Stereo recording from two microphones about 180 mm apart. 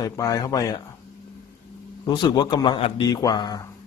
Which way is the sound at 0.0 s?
20° left (ahead or behind).